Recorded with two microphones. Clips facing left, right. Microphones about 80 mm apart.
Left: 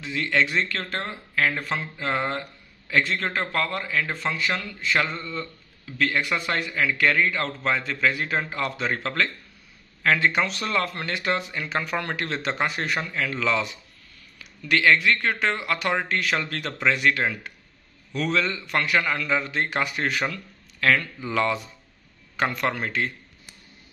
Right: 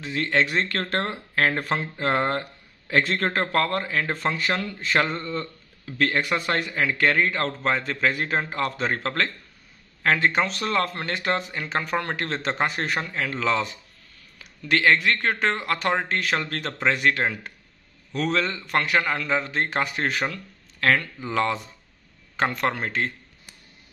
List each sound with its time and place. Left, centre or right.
0.0 s a man's voice: right